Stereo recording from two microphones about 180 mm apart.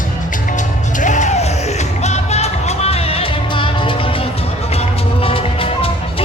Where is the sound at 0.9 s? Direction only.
45° left (ahead or behind).